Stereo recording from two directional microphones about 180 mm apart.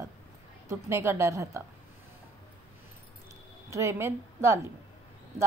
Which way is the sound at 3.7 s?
15° right (ahead or behind).